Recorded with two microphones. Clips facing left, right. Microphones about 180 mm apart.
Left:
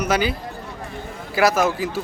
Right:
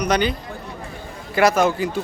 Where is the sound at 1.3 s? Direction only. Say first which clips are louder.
Right 2 dB; centre (ahead or behind).